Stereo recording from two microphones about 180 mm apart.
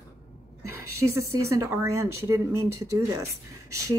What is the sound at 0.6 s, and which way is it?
Speech, 15° right (ahead or behind).